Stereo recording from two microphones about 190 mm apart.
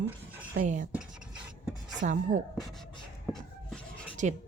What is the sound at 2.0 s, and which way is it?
Speech, 45° right (ahead or behind).